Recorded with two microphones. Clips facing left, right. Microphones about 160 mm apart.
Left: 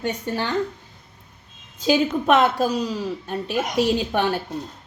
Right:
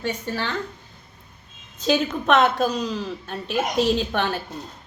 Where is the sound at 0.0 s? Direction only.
15° left (ahead or behind).